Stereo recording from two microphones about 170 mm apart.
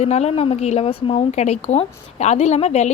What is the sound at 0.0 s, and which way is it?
A woman's voice, 40° left (ahead or behind).